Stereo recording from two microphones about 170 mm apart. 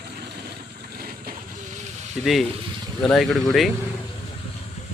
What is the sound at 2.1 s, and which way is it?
Speech, centre (ahead or behind).